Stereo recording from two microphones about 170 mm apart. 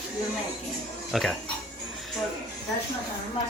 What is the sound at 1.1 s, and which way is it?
Speech, centre (ahead or behind).